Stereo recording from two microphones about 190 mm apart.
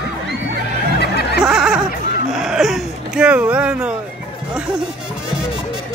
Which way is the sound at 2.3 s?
Centre (ahead or behind).